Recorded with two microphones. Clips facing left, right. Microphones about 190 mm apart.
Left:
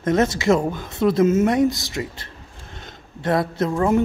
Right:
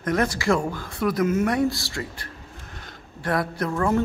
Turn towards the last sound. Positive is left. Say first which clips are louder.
# left 4 dB
turn(degrees=20)  # may be behind; listen again after turning